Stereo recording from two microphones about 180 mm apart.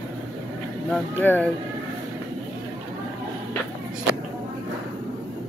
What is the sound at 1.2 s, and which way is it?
Speech, 10° left (ahead or behind).